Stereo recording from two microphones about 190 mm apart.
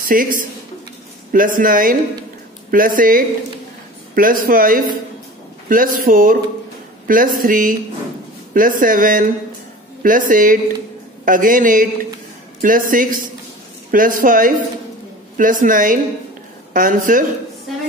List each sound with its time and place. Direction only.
0.1 s a man's voice: 45° right (ahead or behind)